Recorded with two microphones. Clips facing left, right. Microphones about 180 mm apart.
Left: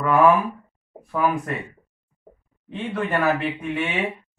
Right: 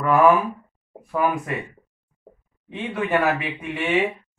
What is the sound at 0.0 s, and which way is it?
Speech, centre (ahead or behind).